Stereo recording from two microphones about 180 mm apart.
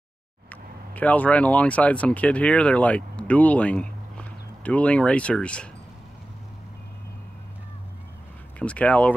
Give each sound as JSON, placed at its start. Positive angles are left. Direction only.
{"t": 0.5, "sound": "speech", "side_deg": 10}
{"t": 8.5, "sound": "speech", "side_deg": 5}